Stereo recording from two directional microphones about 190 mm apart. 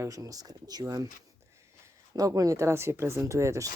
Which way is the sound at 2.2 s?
20° right (ahead or behind).